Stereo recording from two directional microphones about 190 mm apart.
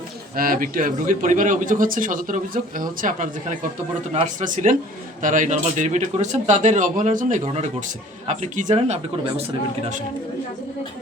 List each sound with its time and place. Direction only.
0.3 s a man's voice: 50° right (ahead or behind)